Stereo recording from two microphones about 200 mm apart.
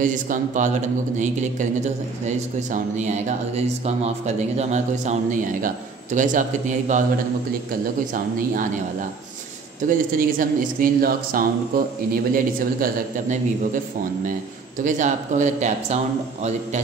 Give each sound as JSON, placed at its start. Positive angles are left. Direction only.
{"t": 0.0, "sound": "speech", "side_deg": -40}
{"t": 8.1, "sound": "speech", "side_deg": -40}
{"t": 9.8, "sound": "speech", "side_deg": -45}
{"t": 14.8, "sound": "speech", "side_deg": -40}